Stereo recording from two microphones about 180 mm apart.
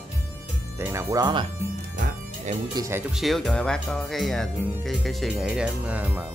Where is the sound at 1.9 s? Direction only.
40° right (ahead or behind).